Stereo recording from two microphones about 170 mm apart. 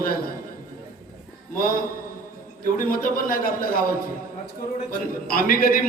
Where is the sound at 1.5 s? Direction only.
55° left (ahead or behind).